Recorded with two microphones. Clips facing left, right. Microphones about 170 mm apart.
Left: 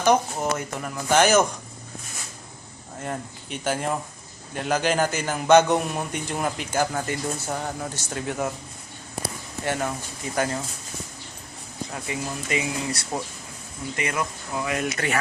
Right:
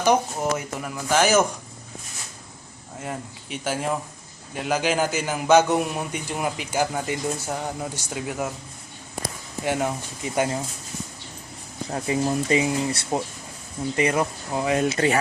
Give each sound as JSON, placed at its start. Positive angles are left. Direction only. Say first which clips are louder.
{"t": 0.0, "sound": "speech", "louder": "even", "side_deg": -10}
{"t": 3.0, "sound": "a man's voice", "louder": "left 1 dB", "side_deg": -5}
{"t": 9.6, "sound": "a man's voice", "louder": "right 2 dB", "side_deg": -15}
{"t": 11.9, "sound": "speech", "louder": "right 9 dB", "side_deg": -30}